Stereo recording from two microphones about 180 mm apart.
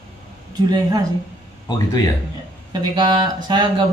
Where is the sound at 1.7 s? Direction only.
20° left (ahead or behind).